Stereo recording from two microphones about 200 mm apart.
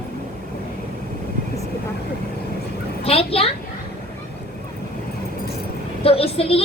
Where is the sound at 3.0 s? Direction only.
30° left (ahead or behind).